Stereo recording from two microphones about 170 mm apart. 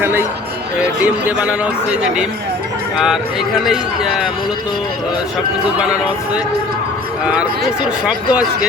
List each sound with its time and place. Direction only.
0.0 s a man's voice: 15° right (ahead or behind)
5.8 s a man's voice: 5° right (ahead or behind)
8.0 s a man's voice: 5° right (ahead or behind)